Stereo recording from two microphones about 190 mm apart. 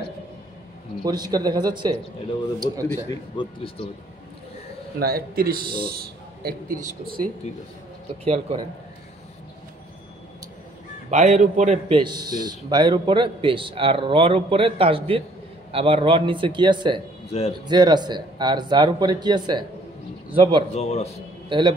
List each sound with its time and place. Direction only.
1.0 s speech: 20° right (ahead or behind)
2.9 s speech: 15° left (ahead or behind)
5.0 s speech: 50° right (ahead or behind)
8.2 s a man's voice: 35° right (ahead or behind)
11.1 s a man's voice: 40° right (ahead or behind)
12.0 s speech: 20° right (ahead or behind)
17.3 s a man's voice: 35° left (ahead or behind)
17.6 s speech: 20° right (ahead or behind)
20.7 s speech: 35° left (ahead or behind)
21.5 s a man's voice: 25° right (ahead or behind)